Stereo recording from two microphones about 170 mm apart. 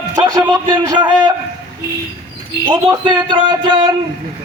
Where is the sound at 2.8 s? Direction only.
25° right (ahead or behind).